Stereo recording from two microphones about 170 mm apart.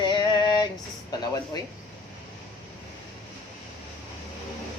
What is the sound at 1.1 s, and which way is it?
Speech, 20° left (ahead or behind).